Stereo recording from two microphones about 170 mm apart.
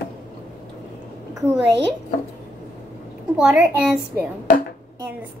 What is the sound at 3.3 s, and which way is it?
Speech, 10° right (ahead or behind).